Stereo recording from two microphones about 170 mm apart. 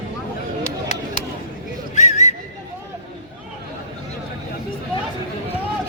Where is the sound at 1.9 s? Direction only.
45° left (ahead or behind).